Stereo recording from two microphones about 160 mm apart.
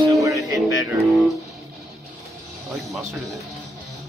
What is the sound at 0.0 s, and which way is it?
Music, 20° right (ahead or behind).